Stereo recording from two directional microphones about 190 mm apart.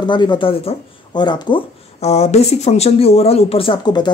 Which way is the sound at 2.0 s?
35° left (ahead or behind).